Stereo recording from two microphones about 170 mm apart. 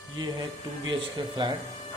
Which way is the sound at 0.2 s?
30° right (ahead or behind).